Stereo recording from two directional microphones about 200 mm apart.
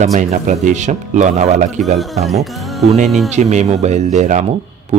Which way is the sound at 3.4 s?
35° right (ahead or behind).